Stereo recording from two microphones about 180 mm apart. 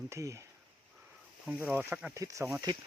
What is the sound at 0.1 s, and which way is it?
Speech, 15° right (ahead or behind).